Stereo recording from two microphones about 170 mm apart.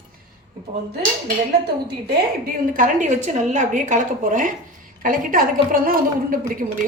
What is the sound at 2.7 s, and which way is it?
A woman's voice, 50° right (ahead or behind).